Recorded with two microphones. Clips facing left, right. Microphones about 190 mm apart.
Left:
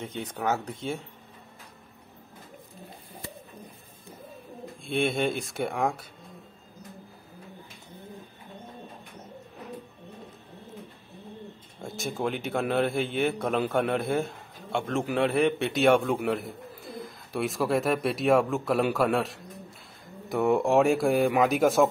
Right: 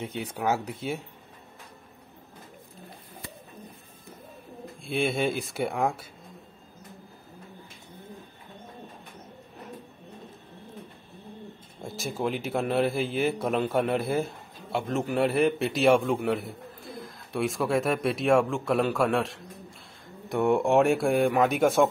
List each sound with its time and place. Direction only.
0.0 s speech: 10° right (ahead or behind)
4.8 s a man's voice: centre (ahead or behind)
11.8 s a man's voice: centre (ahead or behind)